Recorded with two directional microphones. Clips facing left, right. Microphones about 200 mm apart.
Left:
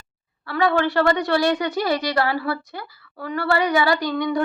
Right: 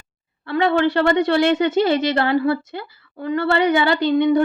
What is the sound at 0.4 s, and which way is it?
Speech, 20° right (ahead or behind).